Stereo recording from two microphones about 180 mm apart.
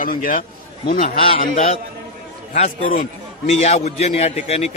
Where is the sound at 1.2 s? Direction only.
30° left (ahead or behind).